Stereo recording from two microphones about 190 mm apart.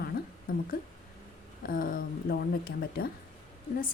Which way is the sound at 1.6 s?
50° left (ahead or behind).